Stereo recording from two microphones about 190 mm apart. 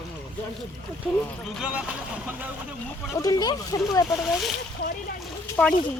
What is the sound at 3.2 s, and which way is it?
Speech, 20° left (ahead or behind).